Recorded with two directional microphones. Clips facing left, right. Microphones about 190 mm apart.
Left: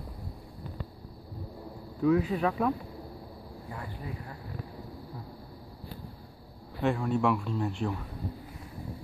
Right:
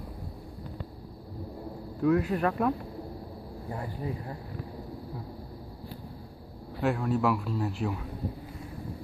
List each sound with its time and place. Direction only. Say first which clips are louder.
2.0 s speech: even; centre (ahead or behind)
3.7 s speech: right 5 dB; 30° right (ahead or behind)
6.8 s speech: even; 5° right (ahead or behind)